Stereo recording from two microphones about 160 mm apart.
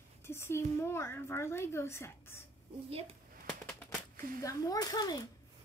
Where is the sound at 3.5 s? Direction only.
10° left (ahead or behind); by 5.2 s 25° left (ahead or behind).